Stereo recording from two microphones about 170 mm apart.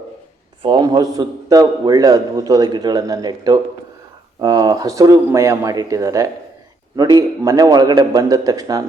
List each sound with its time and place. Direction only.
0.6 s a man's voice: 25° right (ahead or behind)